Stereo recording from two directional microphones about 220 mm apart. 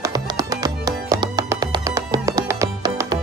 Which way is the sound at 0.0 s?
15° right (ahead or behind).